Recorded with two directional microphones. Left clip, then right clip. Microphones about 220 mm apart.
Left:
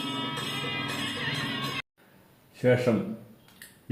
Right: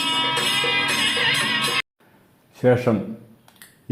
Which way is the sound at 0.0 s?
35° right (ahead or behind).